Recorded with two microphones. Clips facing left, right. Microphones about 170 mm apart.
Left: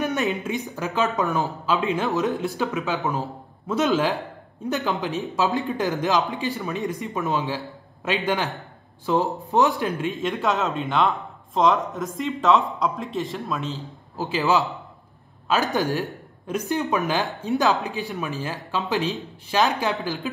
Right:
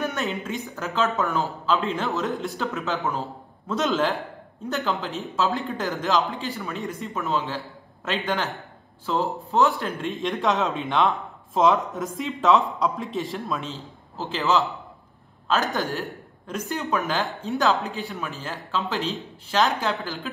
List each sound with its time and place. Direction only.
0.0 s speech: 15° left (ahead or behind)
4.6 s speech: 15° left (ahead or behind)
10.0 s a man's voice: centre (ahead or behind)
14.1 s speech: 15° left (ahead or behind)
15.7 s speech: 15° left (ahead or behind)